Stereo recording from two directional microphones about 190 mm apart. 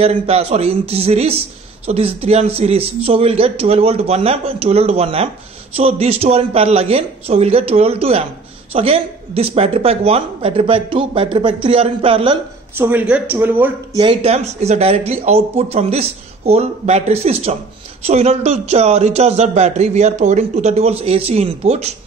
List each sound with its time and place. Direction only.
0.0 s a man's voice: 35° right (ahead or behind)
12.7 s speech: 10° right (ahead or behind)
13.9 s a man's voice: 30° right (ahead or behind)